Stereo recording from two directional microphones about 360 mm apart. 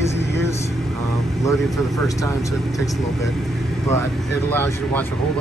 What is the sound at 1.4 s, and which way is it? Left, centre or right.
Speech, centre.